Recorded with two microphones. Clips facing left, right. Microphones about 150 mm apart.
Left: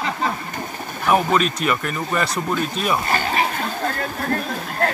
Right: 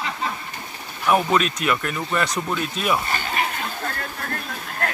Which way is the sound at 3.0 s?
40° left (ahead or behind).